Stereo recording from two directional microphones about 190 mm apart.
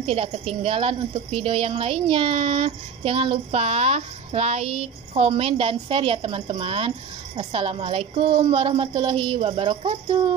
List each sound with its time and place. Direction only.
0.0 s speech: 30° right (ahead or behind)